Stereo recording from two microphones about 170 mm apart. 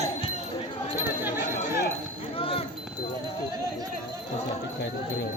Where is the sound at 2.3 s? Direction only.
35° left (ahead or behind).